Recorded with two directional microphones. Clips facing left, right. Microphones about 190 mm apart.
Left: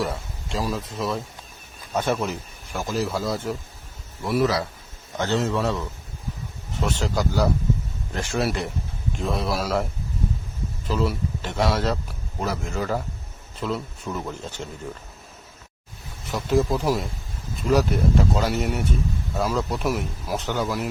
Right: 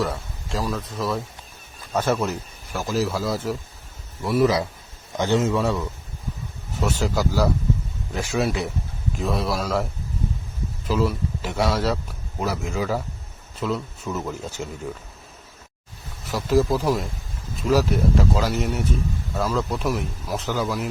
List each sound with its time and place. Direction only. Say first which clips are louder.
0.0 s a sound: right 1 dB; centre (ahead or behind)
0.6 s speech: even; 5° left (ahead or behind)
5.1 s a man's voice: right 3 dB; 15° right (ahead or behind)
5.4 s speech: right 2 dB; centre (ahead or behind)
6.8 s speech: right 2 dB; 5° right (ahead or behind)
10.8 s speech: right 2 dB; 5° right (ahead or behind)
16.3 s speech: right 2 dB; centre (ahead or behind)